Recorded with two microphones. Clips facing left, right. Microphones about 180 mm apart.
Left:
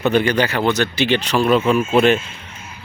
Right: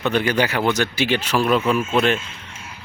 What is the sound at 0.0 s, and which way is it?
Speech, centre (ahead or behind).